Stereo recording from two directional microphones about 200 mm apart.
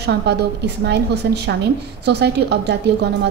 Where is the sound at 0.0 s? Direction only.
55° right (ahead or behind).